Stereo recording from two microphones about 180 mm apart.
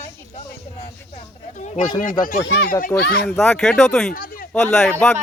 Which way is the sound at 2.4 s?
70° left (ahead or behind).